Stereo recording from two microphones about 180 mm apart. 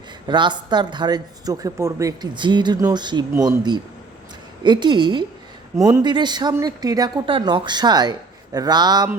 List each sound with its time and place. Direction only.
0.3 s speech: 25° right (ahead or behind)
4.6 s speech: 25° right (ahead or behind)